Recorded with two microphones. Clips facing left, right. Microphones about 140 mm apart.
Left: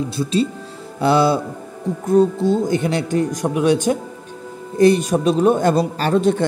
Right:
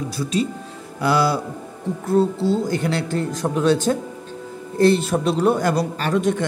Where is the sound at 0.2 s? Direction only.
30° left (ahead or behind).